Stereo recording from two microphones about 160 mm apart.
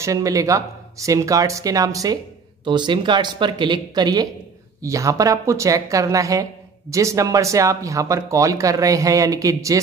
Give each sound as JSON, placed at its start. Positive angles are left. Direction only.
{"t": 0.0, "sound": "speech", "side_deg": -20}